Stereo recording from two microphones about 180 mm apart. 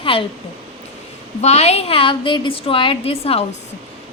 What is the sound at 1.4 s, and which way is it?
A woman's voice, 35° left (ahead or behind).